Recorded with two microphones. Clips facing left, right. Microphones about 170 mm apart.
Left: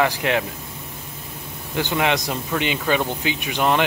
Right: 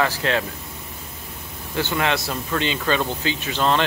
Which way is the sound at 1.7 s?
15° left (ahead or behind).